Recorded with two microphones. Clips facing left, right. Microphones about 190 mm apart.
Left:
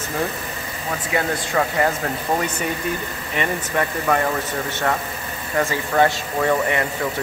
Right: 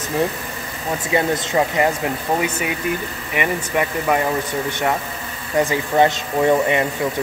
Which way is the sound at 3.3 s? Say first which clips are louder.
Right 2 dB; 15° right (ahead or behind).